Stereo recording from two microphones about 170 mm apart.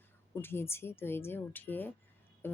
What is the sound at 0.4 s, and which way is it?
Speech, 15° left (ahead or behind).